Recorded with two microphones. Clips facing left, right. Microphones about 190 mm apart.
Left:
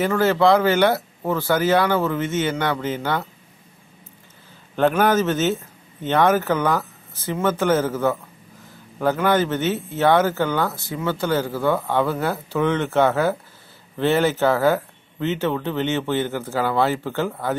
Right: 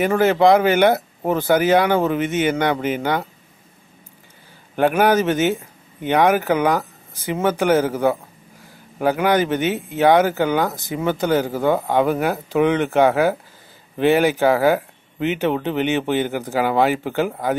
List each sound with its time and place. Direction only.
0.0 s speech: 15° right (ahead or behind)
4.7 s speech: 15° right (ahead or behind)